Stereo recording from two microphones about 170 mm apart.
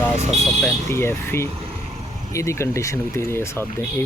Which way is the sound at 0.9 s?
15° left (ahead or behind).